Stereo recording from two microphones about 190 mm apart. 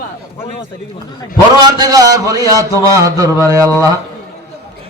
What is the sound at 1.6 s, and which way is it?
A man's voice, 20° right (ahead or behind).